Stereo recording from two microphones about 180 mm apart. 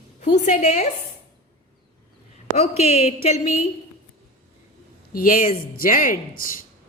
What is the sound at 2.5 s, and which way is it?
Speech, 35° left (ahead or behind).